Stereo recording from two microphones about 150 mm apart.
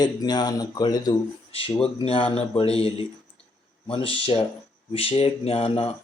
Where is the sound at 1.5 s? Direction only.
40° left (ahead or behind).